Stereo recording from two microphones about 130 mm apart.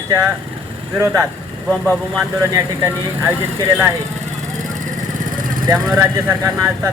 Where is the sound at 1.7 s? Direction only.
10° left (ahead or behind).